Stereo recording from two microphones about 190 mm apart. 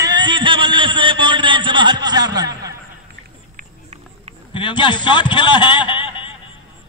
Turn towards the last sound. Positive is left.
turn(degrees=25)  # may be behind; listen again after turning